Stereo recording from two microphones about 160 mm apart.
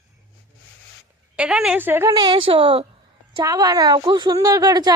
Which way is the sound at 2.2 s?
30° right (ahead or behind).